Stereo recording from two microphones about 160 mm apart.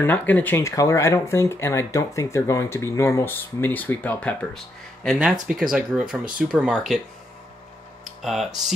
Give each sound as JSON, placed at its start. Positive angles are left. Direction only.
{"t": 0.0, "sound": "speech", "side_deg": 10}
{"t": 5.0, "sound": "speech", "side_deg": 0}
{"t": 8.2, "sound": "speech", "side_deg": 0}